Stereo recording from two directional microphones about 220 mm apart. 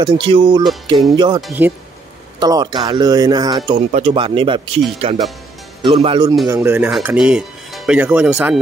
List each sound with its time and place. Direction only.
0.0 s speech: 25° right (ahead or behind)
2.4 s speech: 20° right (ahead or behind)
6.4 s speech: 15° right (ahead or behind)